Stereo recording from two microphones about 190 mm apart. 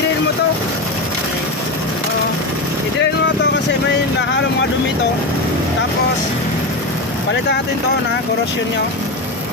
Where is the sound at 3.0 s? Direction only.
70° left (ahead or behind).